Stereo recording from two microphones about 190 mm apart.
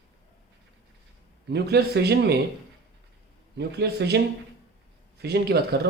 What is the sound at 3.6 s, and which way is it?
Speech, 60° right (ahead or behind).